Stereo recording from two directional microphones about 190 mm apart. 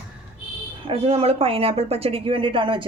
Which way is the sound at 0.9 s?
30° right (ahead or behind).